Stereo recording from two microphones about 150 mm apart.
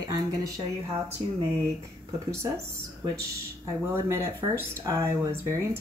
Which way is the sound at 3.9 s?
15° right (ahead or behind).